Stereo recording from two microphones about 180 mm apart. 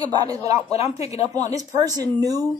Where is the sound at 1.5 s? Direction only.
20° right (ahead or behind).